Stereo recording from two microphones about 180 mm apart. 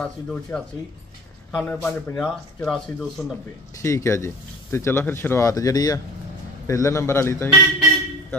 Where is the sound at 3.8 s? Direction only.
15° left (ahead or behind).